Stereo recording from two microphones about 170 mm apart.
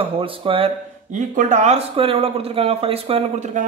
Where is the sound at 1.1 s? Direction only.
45° right (ahead or behind).